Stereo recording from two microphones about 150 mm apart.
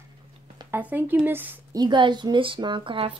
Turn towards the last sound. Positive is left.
turn(degrees=-35)  # may be behind; listen again after turning